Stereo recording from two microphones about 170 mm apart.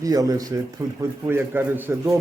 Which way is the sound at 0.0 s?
20° right (ahead or behind).